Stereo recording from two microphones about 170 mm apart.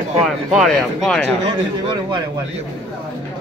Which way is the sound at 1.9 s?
25° right (ahead or behind).